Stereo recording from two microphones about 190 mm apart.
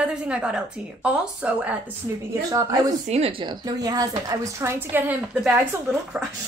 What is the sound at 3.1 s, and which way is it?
A woman's voice, 30° right (ahead or behind).